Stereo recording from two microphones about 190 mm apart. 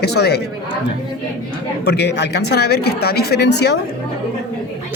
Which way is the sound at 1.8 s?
60° left (ahead or behind).